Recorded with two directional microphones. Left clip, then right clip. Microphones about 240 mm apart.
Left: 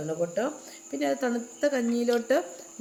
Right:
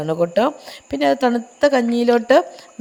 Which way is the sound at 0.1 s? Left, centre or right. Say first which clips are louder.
Right 12 dB; right.